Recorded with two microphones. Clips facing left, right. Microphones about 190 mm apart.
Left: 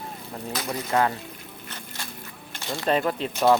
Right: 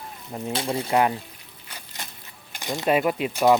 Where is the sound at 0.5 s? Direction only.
30° right (ahead or behind).